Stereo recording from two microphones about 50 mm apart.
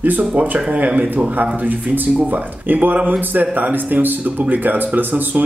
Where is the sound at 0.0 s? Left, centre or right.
Right.